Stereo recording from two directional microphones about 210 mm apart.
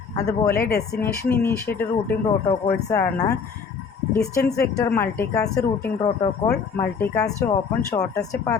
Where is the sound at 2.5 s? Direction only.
35° left (ahead or behind).